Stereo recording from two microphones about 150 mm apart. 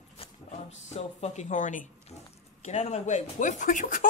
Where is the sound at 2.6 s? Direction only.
45° left (ahead or behind); by 4.1 s 65° left (ahead or behind).